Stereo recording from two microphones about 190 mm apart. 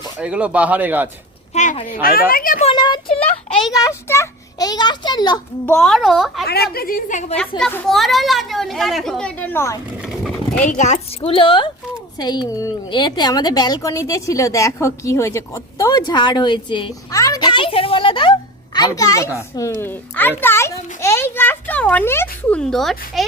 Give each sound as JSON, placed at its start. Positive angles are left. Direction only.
{"t": 0.2, "sound": "speech", "side_deg": -5}
{"t": 1.5, "sound": "speech", "side_deg": 40}
{"t": 1.9, "sound": "a woman's voice", "side_deg": 50}
{"t": 2.6, "sound": "a woman's voice", "side_deg": 25}
{"t": 5.6, "sound": "speech", "side_deg": 5}
{"t": 6.5, "sound": "a woman's voice", "side_deg": 55}
{"t": 7.6, "sound": "speech", "side_deg": 0}
{"t": 10.0, "sound": "boat", "side_deg": 0}
{"t": 10.6, "sound": "a woman's voice", "side_deg": 40}